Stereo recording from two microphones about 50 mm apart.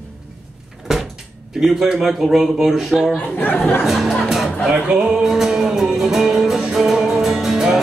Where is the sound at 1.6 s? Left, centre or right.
Centre.